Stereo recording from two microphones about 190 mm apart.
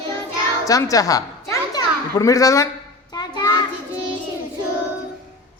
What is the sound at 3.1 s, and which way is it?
Child singing, 20° left (ahead or behind).